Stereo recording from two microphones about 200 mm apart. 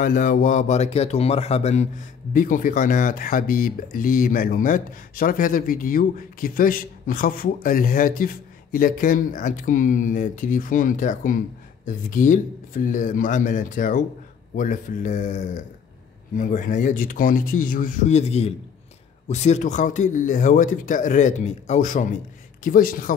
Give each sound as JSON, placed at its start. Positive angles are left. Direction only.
{"t": 0.0, "sound": "a man's voice", "side_deg": 40}